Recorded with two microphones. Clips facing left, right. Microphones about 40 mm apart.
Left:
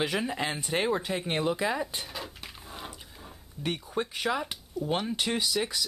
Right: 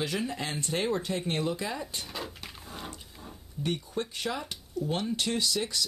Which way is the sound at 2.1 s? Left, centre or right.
Centre.